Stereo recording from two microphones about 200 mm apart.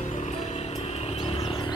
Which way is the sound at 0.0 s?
35° left (ahead or behind).